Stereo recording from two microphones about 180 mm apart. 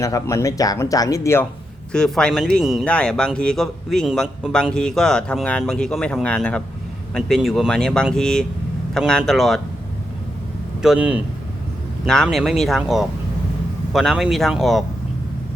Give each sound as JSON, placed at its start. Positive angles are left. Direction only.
{"t": 0.0, "sound": "speech", "side_deg": 15}
{"t": 1.9, "sound": "speech", "side_deg": 5}
{"t": 10.8, "sound": "speech", "side_deg": -5}